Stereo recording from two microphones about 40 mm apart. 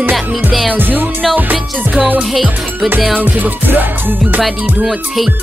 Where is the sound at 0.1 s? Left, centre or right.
Centre.